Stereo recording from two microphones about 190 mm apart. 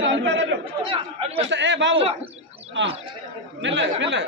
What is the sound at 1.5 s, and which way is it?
Speech, 70° right (ahead or behind).